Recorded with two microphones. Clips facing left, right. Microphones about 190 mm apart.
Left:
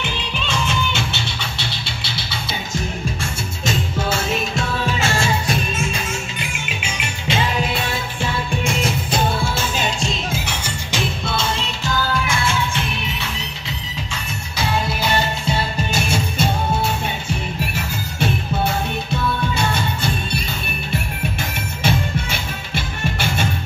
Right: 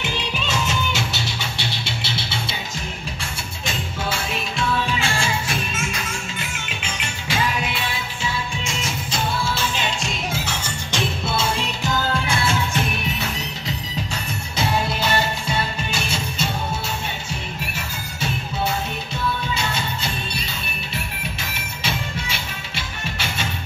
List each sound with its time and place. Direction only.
3.6 s music: 45° left (ahead or behind)
7.2 s music: 25° left (ahead or behind)
7.7 s music: 55° left (ahead or behind); by 10.1 s 40° left (ahead or behind)
10.3 s music: 10° left (ahead or behind)
11.2 s music: 5° right (ahead or behind)
11.8 s music: 20° right (ahead or behind)
12.3 s music: 40° right (ahead or behind)
15.9 s music: 50° left (ahead or behind)
19.5 s music: 55° left (ahead or behind)
21.8 s music: 50° left (ahead or behind)